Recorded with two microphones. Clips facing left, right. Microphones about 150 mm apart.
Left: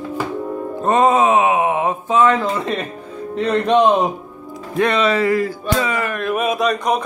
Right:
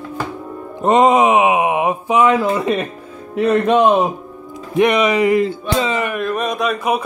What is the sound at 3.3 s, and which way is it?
Speech, 10° right (ahead or behind).